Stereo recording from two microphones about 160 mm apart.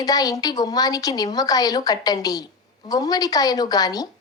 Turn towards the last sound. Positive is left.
turn(degrees=25)  # may be behind; listen again after turning